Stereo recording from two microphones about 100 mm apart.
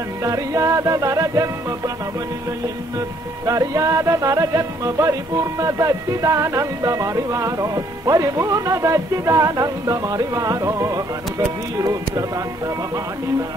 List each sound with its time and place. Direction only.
0.2 s music: 35° right (ahead or behind)
3.4 s music: 35° right (ahead or behind)